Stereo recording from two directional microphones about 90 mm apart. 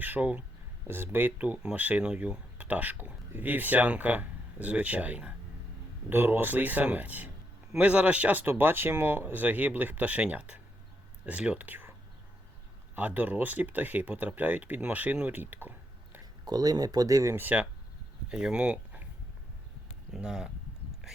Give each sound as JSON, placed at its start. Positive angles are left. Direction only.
{"t": 0.0, "sound": "speech", "side_deg": -20}
{"t": 13.0, "sound": "speech", "side_deg": -20}
{"t": 16.5, "sound": "speech", "side_deg": -45}
{"t": 17.3, "sound": "speech", "side_deg": -15}
{"t": 20.1, "sound": "speech", "side_deg": -10}